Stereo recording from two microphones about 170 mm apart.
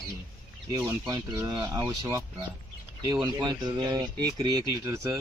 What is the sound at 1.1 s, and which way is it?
Speech, 20° right (ahead or behind).